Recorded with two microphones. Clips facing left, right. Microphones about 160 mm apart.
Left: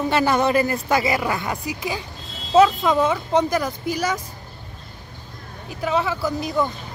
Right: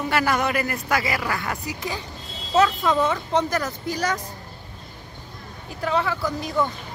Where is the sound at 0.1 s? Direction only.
25° left (ahead or behind).